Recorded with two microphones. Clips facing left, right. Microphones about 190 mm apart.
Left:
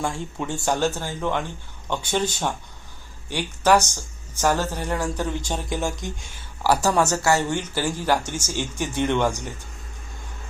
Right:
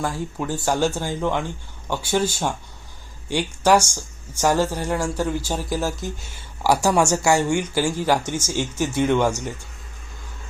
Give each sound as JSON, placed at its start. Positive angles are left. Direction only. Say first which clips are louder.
{"t": 0.0, "sound": "speech", "louder": "right 2 dB", "side_deg": 0}